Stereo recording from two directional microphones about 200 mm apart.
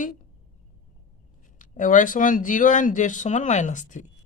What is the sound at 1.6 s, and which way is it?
A woman's voice, 40° left (ahead or behind).